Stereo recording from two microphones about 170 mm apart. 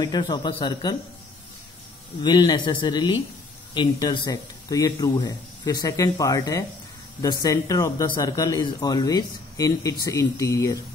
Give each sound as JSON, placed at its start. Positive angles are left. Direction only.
{"t": 0.0, "sound": "speech", "side_deg": 25}
{"t": 2.2, "sound": "speech", "side_deg": 25}